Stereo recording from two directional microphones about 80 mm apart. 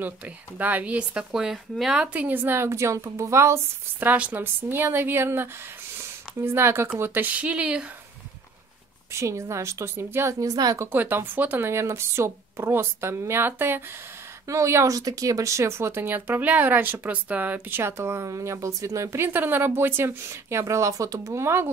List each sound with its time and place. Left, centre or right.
0.6 s speech: right; by 2.0 s centre
2.1 s speech: right
4.0 s speech: right
5.9 s a sound: right
7.0 s speech: right
9.1 s speech: right
10.4 s speech: right
10.9 s speech: right
14.5 s speech: right
15.0 s speech: right